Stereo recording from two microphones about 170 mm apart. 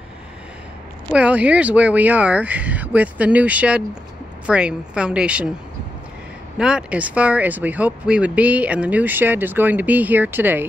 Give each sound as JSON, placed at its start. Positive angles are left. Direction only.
{"t": 1.1, "sound": "a woman's voice", "side_deg": -10}
{"t": 6.6, "sound": "speech", "side_deg": -5}